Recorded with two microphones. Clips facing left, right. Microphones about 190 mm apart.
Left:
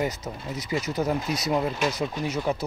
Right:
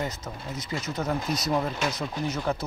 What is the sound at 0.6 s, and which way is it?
Speech, 15° left (ahead or behind).